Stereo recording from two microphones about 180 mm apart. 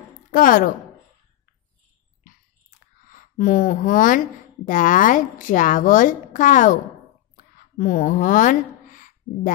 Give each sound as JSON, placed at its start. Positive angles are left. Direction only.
{"t": 0.3, "sound": "a woman's voice", "side_deg": 50}
{"t": 3.1, "sound": "a woman's voice", "side_deg": 50}
{"t": 7.3, "sound": "a sound", "side_deg": 50}